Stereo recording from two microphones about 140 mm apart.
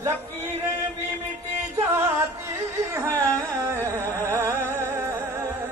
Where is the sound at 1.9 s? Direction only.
15° right (ahead or behind).